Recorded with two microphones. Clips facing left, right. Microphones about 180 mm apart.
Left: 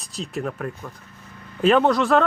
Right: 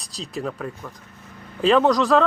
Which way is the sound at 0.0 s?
35° right (ahead or behind).